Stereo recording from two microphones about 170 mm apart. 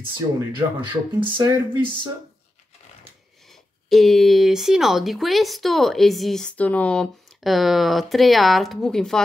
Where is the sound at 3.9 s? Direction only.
Centre (ahead or behind).